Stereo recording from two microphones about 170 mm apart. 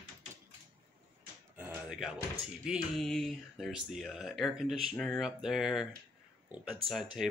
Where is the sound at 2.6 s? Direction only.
Centre (ahead or behind).